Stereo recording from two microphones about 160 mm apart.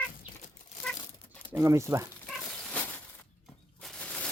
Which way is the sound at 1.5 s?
15° right (ahead or behind).